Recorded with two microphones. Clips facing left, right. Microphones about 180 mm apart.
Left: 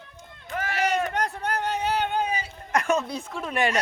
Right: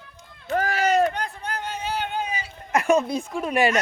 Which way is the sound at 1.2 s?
70° left (ahead or behind).